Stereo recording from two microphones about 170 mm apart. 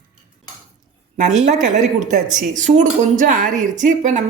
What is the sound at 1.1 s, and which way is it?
A woman's voice, 45° right (ahead or behind).